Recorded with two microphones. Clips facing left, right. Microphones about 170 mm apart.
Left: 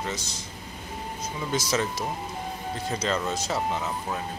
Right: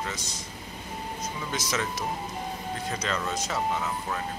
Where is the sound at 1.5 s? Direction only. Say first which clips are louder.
Left 5 dB; 30° left (ahead or behind).